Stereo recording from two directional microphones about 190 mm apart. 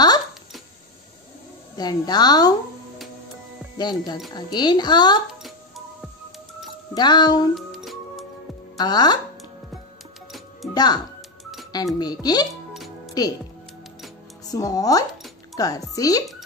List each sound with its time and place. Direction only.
1.8 s speech: 20° left (ahead or behind)
3.7 s speech: 20° left (ahead or behind)
6.9 s speech: 20° left (ahead or behind)
7.5 s music: centre (ahead or behind)
8.7 s speech: 20° left (ahead or behind)
10.7 s speech: 20° left (ahead or behind)
12.7 s music: centre (ahead or behind)
14.5 s speech: 20° left (ahead or behind)